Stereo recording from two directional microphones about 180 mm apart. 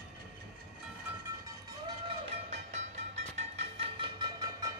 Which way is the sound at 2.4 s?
40° right (ahead or behind).